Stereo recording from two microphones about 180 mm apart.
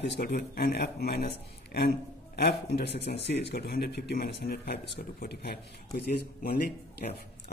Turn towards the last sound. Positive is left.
turn(degrees=60)  # may be behind; listen again after turning